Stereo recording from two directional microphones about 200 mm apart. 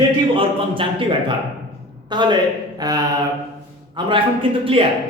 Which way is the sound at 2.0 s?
20° right (ahead or behind).